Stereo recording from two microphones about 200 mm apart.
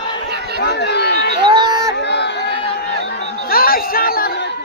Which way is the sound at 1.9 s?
60° left (ahead or behind).